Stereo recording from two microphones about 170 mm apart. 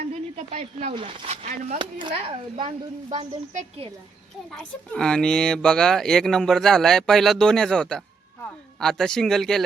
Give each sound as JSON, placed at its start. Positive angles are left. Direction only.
{"t": 0.1, "sound": "speech", "side_deg": -40}
{"t": 1.8, "sound": "speech", "side_deg": -30}
{"t": 3.5, "sound": "a woman's voice", "side_deg": -45}
{"t": 4.4, "sound": "speech", "side_deg": 5}